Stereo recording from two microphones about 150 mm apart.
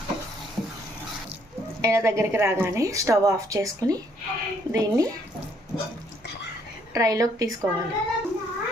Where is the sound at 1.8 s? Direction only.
20° right (ahead or behind).